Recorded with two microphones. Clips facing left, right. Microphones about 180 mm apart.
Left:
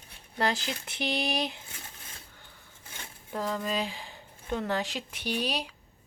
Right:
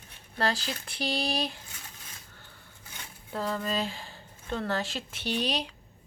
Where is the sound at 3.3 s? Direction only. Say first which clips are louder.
Even; 15° left (ahead or behind).